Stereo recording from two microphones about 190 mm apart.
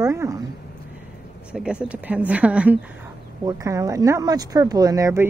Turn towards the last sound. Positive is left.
turn(degrees=-15)  # may be behind; listen again after turning